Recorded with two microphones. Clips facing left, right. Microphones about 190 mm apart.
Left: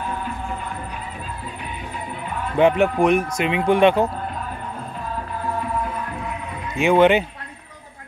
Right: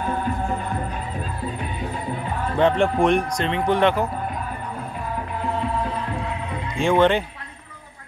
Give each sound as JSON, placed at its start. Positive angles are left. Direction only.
{"t": 2.5, "sound": "speech", "side_deg": 10}
{"t": 5.4, "sound": "music", "side_deg": -25}
{"t": 6.8, "sound": "speech", "side_deg": 10}